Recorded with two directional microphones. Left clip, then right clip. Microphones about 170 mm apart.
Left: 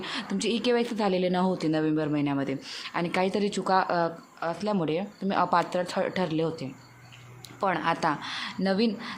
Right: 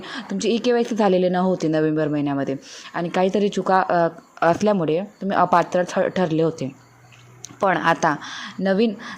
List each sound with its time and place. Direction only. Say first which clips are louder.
0.0 s a woman's voice: right 5 dB; 20° right (ahead or behind)
4.4 s speech: right 12 dB; 50° right (ahead or behind)
4.8 s a woman's voice: right 7 dB; 30° right (ahead or behind)